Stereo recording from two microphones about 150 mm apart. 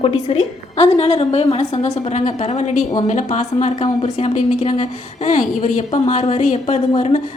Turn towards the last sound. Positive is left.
turn(degrees=50)  # may be behind; listen again after turning